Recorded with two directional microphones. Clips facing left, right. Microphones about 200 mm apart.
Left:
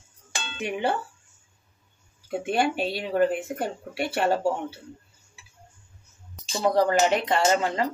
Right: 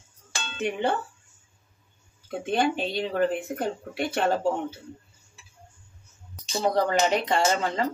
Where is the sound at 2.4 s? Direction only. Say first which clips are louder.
Even; 5° left (ahead or behind).